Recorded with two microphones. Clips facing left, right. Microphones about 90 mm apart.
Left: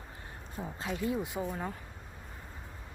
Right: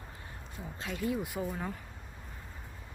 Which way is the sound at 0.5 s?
25° left (ahead or behind).